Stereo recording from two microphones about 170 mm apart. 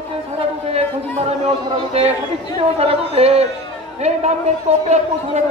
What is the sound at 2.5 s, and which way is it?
A man's voice, 35° right (ahead or behind).